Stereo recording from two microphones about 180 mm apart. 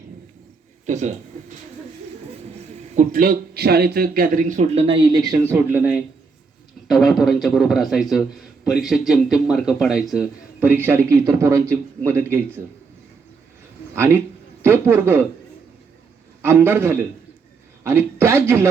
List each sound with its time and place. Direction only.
0.9 s speech: 40° right (ahead or behind)
2.9 s a man's voice: 45° right (ahead or behind); by 12.6 s 15° right (ahead or behind)
13.9 s a man's voice: 10° right (ahead or behind)
16.4 s a man's voice: 15° right (ahead or behind)